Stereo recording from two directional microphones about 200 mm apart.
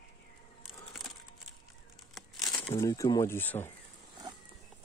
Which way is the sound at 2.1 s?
Centre (ahead or behind).